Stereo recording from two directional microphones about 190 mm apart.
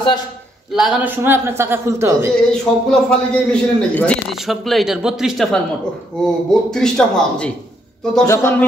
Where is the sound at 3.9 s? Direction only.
5° left (ahead or behind).